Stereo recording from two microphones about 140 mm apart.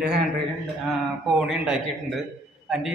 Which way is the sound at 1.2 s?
5° right (ahead or behind).